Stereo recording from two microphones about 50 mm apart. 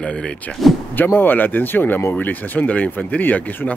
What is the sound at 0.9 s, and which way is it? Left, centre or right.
Speech, left.